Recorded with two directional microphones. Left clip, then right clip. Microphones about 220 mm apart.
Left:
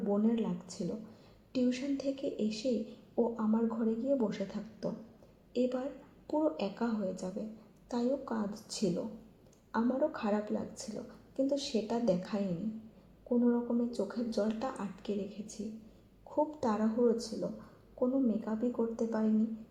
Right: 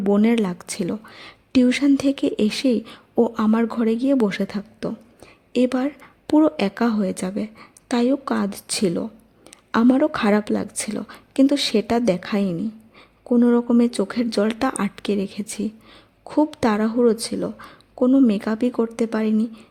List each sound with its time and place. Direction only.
0.0 s speech: 50° right (ahead or behind)
9.7 s speech: 45° right (ahead or behind)
13.5 s speech: 50° right (ahead or behind)